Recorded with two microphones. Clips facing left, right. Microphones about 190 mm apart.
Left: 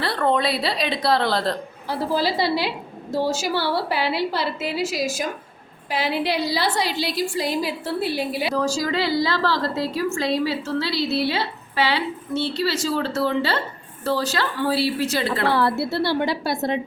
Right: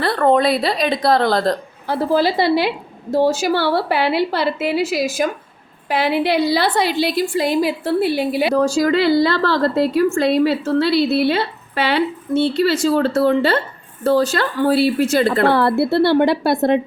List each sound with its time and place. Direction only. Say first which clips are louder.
0.0 s a woman's voice: right 6 dB; 50° right (ahead or behind)